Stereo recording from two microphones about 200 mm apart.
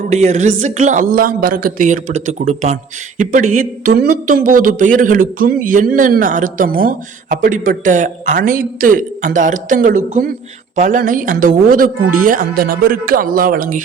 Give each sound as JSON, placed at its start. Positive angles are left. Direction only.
{"t": 0.1, "sound": "speech", "side_deg": -35}